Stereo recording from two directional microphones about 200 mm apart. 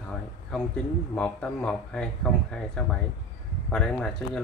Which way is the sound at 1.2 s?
5° left (ahead or behind).